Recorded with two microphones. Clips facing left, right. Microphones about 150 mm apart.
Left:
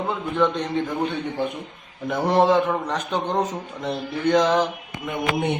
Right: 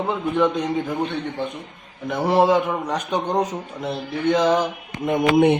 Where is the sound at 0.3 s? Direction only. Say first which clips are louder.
Right 1 dB; 10° right (ahead or behind).